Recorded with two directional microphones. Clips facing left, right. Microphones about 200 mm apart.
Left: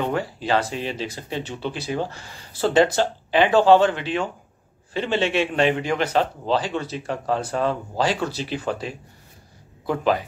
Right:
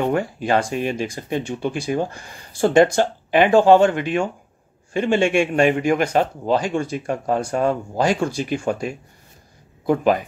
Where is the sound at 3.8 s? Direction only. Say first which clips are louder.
Right 3 dB; 50° right (ahead or behind).